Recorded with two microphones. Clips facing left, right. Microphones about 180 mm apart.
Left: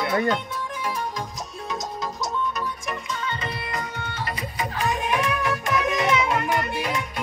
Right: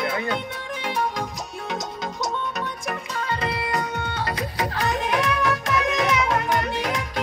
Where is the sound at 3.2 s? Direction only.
65° right (ahead or behind).